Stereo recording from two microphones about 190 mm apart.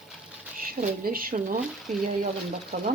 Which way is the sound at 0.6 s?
50° right (ahead or behind).